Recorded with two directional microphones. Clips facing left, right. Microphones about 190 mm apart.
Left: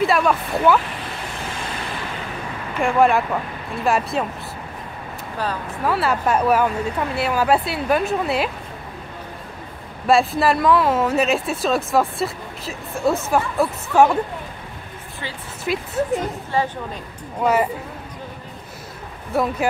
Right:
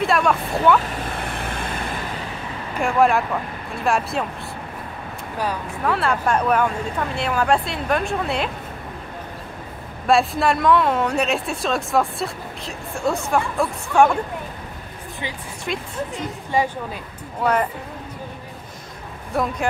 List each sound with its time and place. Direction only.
0.0 s speech: centre (ahead or behind)
1.3 s vehicle: 60° right (ahead or behind)
2.8 s speech: centre (ahead or behind)
5.9 s speech: 5° left (ahead or behind)
10.0 s speech: centre (ahead or behind)
15.7 s speech: 5° left (ahead or behind)
16.5 s a woman's voice: 15° right (ahead or behind)
17.4 s speech: 10° left (ahead or behind)
19.3 s speech: centre (ahead or behind)